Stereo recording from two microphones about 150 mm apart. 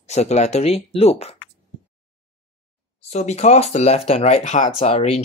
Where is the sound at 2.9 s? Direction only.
45° left (ahead or behind).